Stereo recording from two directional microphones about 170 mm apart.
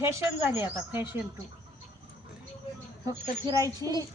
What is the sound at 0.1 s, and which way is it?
Speech, 15° right (ahead or behind).